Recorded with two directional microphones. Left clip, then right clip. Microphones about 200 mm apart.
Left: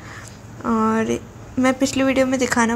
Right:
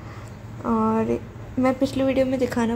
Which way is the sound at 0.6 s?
20° left (ahead or behind).